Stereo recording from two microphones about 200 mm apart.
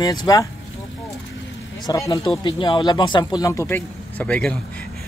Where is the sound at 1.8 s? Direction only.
15° left (ahead or behind).